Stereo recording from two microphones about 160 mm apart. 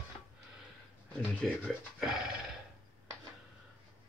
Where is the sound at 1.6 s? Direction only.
Centre (ahead or behind).